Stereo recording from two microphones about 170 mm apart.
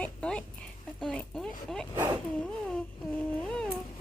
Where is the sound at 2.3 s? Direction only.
5° left (ahead or behind).